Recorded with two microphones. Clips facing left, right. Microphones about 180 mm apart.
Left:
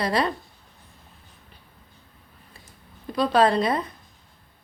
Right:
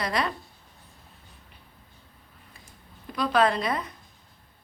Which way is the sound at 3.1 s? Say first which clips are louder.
Left 4 dB; 30° left (ahead or behind).